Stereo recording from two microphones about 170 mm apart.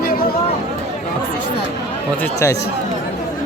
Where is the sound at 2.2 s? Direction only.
15° left (ahead or behind).